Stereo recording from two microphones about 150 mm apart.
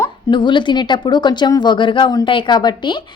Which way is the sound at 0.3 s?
30° left (ahead or behind).